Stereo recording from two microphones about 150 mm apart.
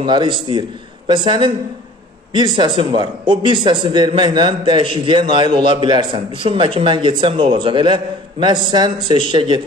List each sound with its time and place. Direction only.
0.0 s a man's voice: 30° right (ahead or behind)